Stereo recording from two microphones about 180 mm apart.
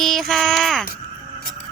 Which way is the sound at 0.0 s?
Centre (ahead or behind).